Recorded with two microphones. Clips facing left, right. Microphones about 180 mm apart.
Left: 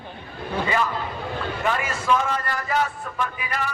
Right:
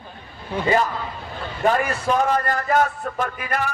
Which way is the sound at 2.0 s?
40° right (ahead or behind).